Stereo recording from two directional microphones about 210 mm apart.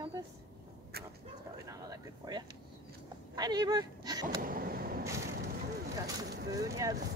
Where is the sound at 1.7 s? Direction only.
20° right (ahead or behind).